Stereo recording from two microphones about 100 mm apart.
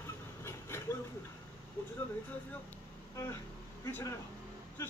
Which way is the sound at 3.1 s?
30° left (ahead or behind).